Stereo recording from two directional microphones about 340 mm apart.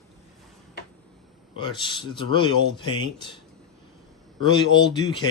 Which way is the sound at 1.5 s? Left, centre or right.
Centre.